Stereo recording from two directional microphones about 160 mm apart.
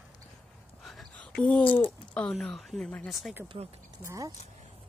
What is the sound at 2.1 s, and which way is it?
Speech, 5° left (ahead or behind).